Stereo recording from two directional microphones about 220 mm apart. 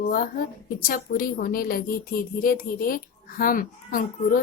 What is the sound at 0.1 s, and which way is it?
A woman's voice, 40° left (ahead or behind).